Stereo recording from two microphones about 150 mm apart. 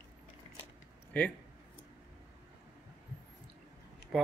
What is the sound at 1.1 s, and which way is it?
Speech, 10° left (ahead or behind).